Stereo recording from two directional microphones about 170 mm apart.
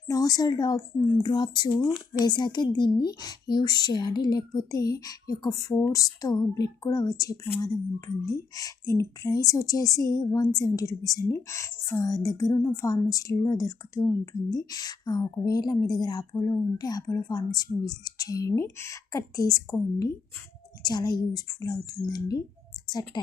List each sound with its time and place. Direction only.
0.1 s speech: 20° left (ahead or behind)